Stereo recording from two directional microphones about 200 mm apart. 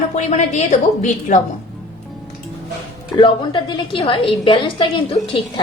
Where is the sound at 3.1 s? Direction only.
25° left (ahead or behind).